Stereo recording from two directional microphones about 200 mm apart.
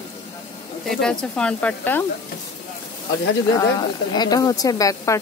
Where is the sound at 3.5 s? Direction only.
20° left (ahead or behind).